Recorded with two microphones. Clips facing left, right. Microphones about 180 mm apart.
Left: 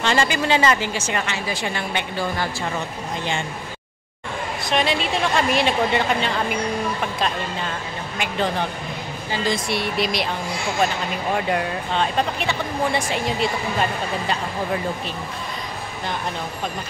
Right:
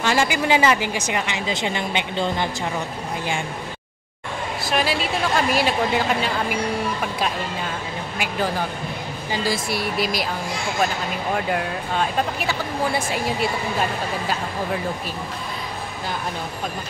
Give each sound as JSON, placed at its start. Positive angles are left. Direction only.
{"t": 0.0, "sound": "speech", "side_deg": -10}
{"t": 4.6, "sound": "speech", "side_deg": -5}
{"t": 11.3, "sound": "speech", "side_deg": 0}